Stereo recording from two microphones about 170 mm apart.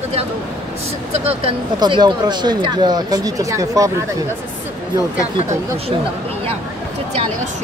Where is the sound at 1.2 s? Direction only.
35° right (ahead or behind).